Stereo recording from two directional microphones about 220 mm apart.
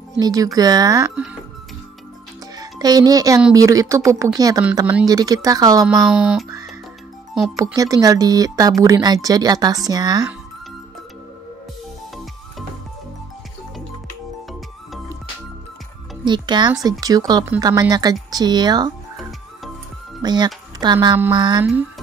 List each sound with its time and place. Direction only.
0.2 s speech: 15° right (ahead or behind)
2.5 s music: 15° right (ahead or behind)
3.5 s speech: 15° right (ahead or behind)
5.9 s speech: 5° right (ahead or behind)
7.5 s speech: 15° right (ahead or behind)
16.3 s speech: 20° right (ahead or behind)
20.2 s speech: 20° right (ahead or behind)